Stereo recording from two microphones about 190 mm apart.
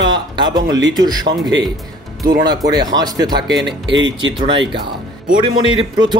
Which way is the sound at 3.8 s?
80° right.